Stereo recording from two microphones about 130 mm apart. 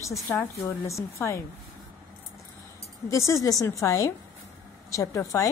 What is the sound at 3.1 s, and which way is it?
A woman's voice, 25° left (ahead or behind).